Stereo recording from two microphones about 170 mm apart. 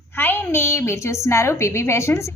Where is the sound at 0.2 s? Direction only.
10° left (ahead or behind).